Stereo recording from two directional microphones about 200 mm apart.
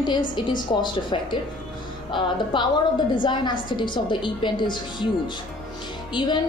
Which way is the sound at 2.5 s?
25° left (ahead or behind).